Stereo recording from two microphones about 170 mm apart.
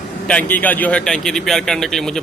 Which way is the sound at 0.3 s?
10° left (ahead or behind).